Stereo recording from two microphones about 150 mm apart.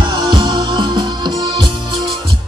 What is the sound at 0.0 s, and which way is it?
Music, 30° right (ahead or behind).